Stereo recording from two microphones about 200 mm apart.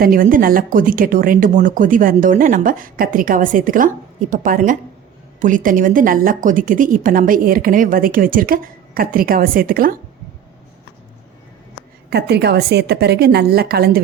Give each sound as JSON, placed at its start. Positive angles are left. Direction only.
{"t": 0.0, "sound": "speech", "side_deg": -45}
{"t": 12.1, "sound": "speech", "side_deg": -55}